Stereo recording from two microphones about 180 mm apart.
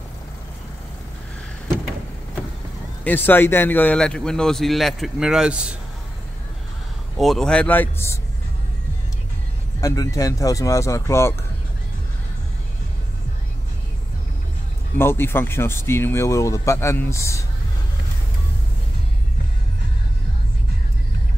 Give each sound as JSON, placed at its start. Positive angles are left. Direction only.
{"t": 3.0, "sound": "speech", "side_deg": 10}
{"t": 7.2, "sound": "speech", "side_deg": 0}
{"t": 9.8, "sound": "speech", "side_deg": 20}
{"t": 15.0, "sound": "speech", "side_deg": 10}